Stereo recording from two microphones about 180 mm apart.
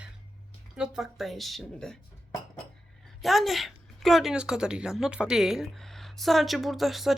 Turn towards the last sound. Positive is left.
turn(degrees=0)  # may be behind; listen again after turning